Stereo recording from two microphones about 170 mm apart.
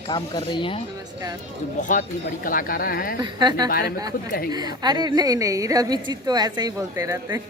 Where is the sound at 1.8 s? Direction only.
50° left (ahead or behind).